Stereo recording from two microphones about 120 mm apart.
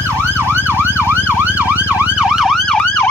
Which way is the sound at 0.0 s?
20° right (ahead or behind).